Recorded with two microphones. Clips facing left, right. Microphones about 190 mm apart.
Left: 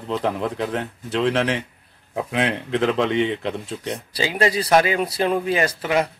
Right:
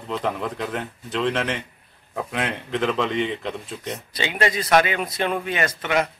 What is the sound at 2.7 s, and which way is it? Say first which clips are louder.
Speech: left 2 dB; 35° left (ahead or behind).